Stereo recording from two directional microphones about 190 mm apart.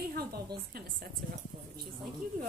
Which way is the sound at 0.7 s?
50° right (ahead or behind).